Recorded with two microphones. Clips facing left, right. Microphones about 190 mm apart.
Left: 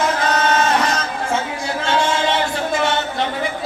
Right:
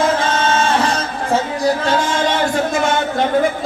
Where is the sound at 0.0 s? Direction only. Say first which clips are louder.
Right 2 dB; 30° right (ahead or behind).